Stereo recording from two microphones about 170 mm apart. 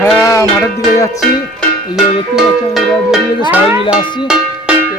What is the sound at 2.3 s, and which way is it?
Speech, centre (ahead or behind).